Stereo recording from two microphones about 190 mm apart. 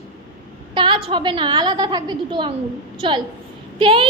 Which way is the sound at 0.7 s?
25° right (ahead or behind).